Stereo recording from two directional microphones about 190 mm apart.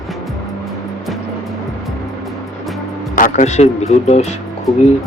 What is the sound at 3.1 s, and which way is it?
Speech, 45° left (ahead or behind).